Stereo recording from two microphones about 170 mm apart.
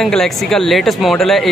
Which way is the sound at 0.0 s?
Centre (ahead or behind).